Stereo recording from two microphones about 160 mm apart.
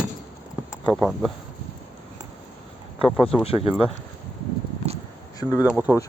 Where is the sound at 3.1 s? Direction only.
5° left (ahead or behind).